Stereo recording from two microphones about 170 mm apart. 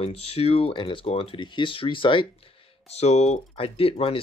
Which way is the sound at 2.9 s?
40° left (ahead or behind).